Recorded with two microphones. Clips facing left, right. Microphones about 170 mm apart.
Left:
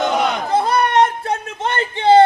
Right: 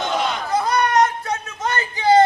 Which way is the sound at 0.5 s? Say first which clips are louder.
Left 2 dB; 30° left (ahead or behind).